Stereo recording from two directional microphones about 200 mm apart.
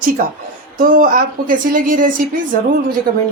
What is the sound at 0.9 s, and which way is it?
Speech, 45° right (ahead or behind).